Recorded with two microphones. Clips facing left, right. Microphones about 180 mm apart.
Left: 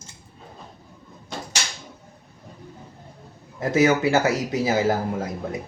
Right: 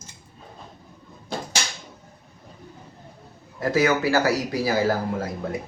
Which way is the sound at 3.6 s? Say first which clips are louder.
Left 2 dB; 20° left (ahead or behind).